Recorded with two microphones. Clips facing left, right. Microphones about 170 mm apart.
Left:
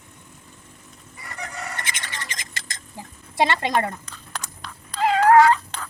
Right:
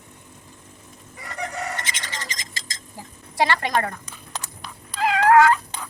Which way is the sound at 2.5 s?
60° left (ahead or behind).